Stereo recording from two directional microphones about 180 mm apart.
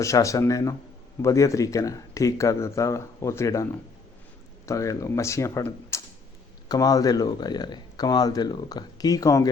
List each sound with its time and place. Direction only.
0.0 s speech: 15° left (ahead or behind)